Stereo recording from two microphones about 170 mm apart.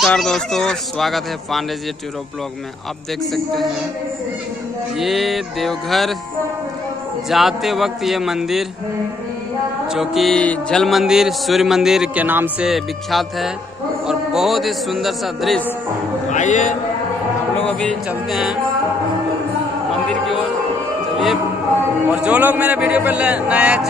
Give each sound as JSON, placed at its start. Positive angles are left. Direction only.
{"t": 0.0, "sound": "mantra", "side_deg": 0}
{"t": 4.9, "sound": "mantra", "side_deg": 0}
{"t": 7.2, "sound": "mantra", "side_deg": 0}
{"t": 9.8, "sound": "mantra", "side_deg": 0}
{"t": 14.0, "sound": "speech", "side_deg": 0}
{"t": 16.3, "sound": "a man's voice", "side_deg": 45}
{"t": 17.6, "sound": "mantra", "side_deg": 5}
{"t": 19.9, "sound": "music", "side_deg": 0}
{"t": 22.1, "sound": "speech", "side_deg": -10}